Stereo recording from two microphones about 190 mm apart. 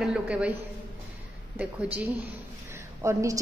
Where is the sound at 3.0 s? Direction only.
15° right (ahead or behind).